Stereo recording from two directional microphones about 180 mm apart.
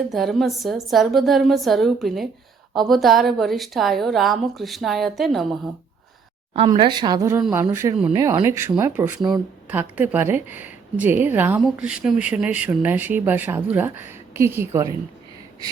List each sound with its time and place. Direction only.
0.1 s a woman's voice: centre (ahead or behind)
6.7 s a woman's voice: 25° right (ahead or behind)